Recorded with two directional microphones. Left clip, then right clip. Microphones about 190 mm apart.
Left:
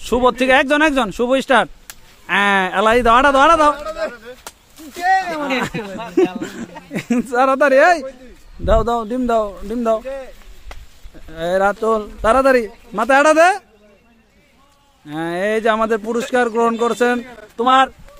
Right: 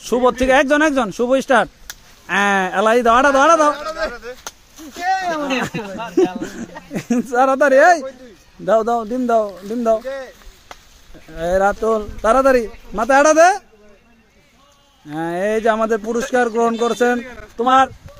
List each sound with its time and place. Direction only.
0.0 s speech: centre (ahead or behind)
3.7 s a man's voice: 15° right (ahead or behind)
4.1 s chop: 30° right (ahead or behind)
4.9 s speech: 25° left (ahead or behind)
6.4 s speech: centre (ahead or behind)
11.2 s speech: 5° left (ahead or behind)
15.0 s speech: centre (ahead or behind)